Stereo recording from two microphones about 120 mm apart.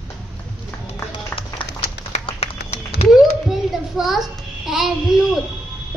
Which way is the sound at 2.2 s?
60° left (ahead or behind).